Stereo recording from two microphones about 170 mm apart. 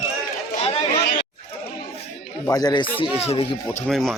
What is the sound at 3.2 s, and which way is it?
Speech, 35° left (ahead or behind).